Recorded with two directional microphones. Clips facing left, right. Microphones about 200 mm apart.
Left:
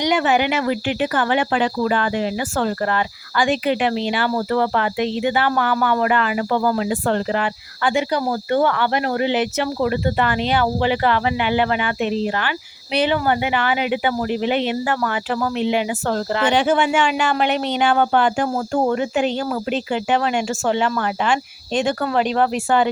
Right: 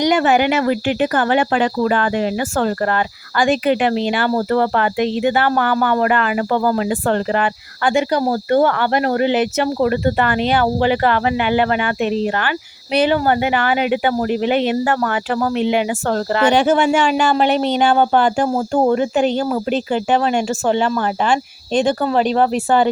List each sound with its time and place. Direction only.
0.0 s speech: 45° right (ahead or behind)